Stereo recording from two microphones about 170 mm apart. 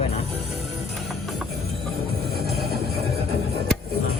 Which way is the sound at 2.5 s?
65° right (ahead or behind).